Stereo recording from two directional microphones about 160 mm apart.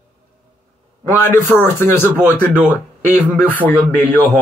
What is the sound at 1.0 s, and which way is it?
Speech, 15° left (ahead or behind).